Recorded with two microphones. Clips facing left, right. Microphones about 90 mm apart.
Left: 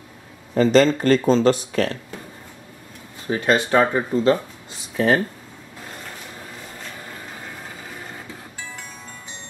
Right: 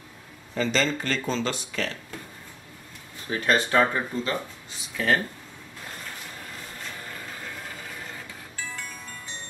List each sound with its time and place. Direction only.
0.6 s speech: 45° left (ahead or behind)
3.3 s speech: 20° left (ahead or behind)